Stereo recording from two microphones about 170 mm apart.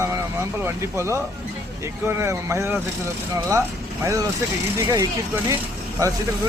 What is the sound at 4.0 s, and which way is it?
Speech, 20° right (ahead or behind).